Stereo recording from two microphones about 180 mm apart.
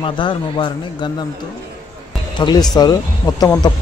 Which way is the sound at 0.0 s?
30° left (ahead or behind).